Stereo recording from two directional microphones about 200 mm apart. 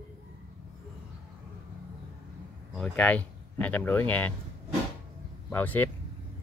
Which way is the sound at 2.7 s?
5° left (ahead or behind).